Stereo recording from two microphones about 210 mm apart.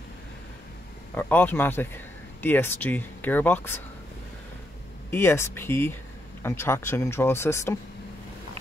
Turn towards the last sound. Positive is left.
turn(degrees=15)  # may be behind; listen again after turning